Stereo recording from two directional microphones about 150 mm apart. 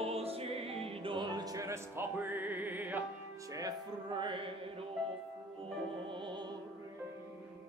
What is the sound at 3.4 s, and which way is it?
Music, 25° right (ahead or behind).